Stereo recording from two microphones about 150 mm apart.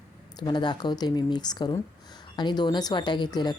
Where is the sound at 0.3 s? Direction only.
30° left (ahead or behind).